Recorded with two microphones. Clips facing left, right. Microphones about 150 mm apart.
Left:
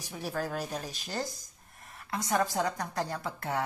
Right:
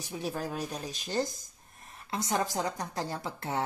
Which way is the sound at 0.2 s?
20° right (ahead or behind).